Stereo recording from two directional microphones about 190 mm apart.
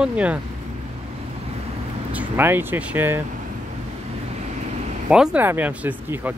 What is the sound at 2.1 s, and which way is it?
Speech, 10° right (ahead or behind).